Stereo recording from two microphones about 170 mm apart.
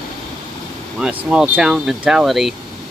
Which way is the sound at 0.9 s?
5° right (ahead or behind).